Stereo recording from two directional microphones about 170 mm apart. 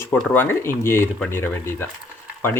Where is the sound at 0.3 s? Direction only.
15° left (ahead or behind).